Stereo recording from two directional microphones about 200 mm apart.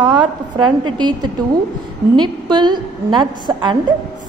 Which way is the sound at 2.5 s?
20° right (ahead or behind).